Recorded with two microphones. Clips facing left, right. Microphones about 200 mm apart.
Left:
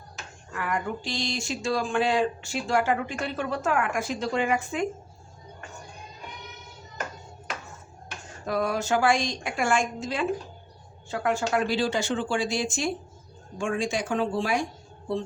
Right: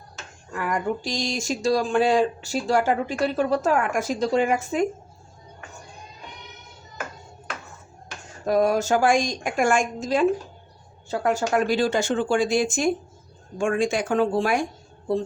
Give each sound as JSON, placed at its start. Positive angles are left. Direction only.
{"t": 0.5, "sound": "speech", "side_deg": -40}
{"t": 8.4, "sound": "a woman's voice", "side_deg": -45}